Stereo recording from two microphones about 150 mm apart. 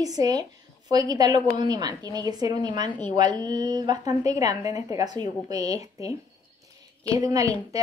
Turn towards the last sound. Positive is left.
turn(degrees=-20)  # may be behind; listen again after turning